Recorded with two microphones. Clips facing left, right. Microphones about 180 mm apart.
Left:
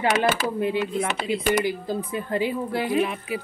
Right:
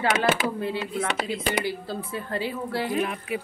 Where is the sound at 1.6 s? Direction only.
15° left (ahead or behind).